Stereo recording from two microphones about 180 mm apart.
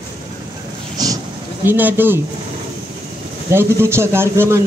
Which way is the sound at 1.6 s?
10° right (ahead or behind).